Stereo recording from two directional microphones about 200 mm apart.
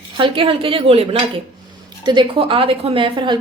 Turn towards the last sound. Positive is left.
turn(degrees=-25)  # may be behind; listen again after turning